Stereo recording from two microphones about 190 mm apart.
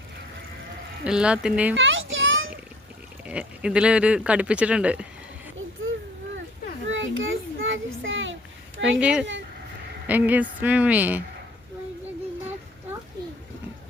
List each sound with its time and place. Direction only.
1.0 s speech: 5° right (ahead or behind)
1.7 s a sound: 80° right
3.2 s speech: 5° right (ahead or behind)
6.8 s children playing: 85° right
9.0 s speech: 5° right (ahead or behind)